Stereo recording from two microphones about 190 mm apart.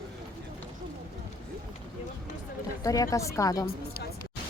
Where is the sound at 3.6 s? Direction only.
55° left (ahead or behind).